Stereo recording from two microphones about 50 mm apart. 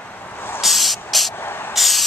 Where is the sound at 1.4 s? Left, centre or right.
Left.